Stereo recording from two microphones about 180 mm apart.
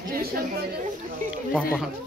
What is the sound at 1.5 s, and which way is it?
Speech, 5° right (ahead or behind).